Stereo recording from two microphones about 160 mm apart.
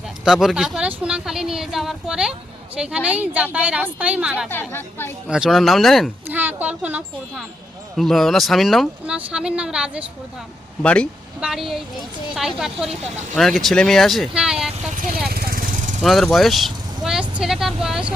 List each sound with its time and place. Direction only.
0.3 s speech: centre (ahead or behind)
4.4 s speech: 15° left (ahead or behind)
5.3 s speech: 5° right (ahead or behind)
6.2 s speech: 10° right (ahead or behind)
7.9 s speech: centre (ahead or behind)
10.8 s speech: 5° left (ahead or behind)
11.3 s speech: 5° right (ahead or behind)
14.9 s speech: 60° right (ahead or behind)
15.3 s vehicle: 70° right (ahead or behind)
16.0 s speech: centre (ahead or behind)